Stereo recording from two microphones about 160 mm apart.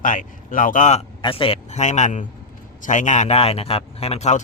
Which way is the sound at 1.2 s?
35° left (ahead or behind).